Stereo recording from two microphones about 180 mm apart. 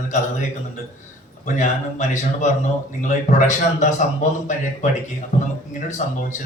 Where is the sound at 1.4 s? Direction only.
40° left (ahead or behind).